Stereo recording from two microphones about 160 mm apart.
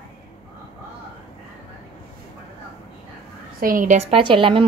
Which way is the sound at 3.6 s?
55° right (ahead or behind).